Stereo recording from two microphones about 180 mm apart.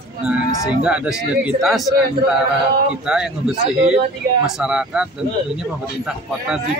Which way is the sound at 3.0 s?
5° right (ahead or behind).